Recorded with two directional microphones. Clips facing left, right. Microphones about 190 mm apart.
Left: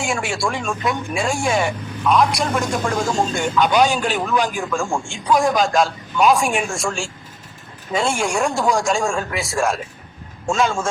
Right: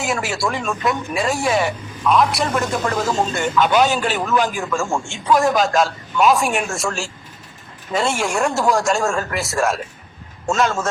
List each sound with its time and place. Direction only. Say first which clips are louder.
0.0 s speech: even; centre (ahead or behind)